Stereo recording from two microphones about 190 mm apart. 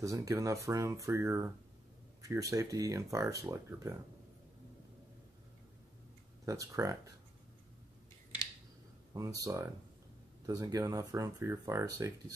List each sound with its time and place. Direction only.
0.0 s speech: 15° right (ahead or behind)
6.4 s speech: 15° right (ahead or behind)
9.1 s speech: 20° right (ahead or behind)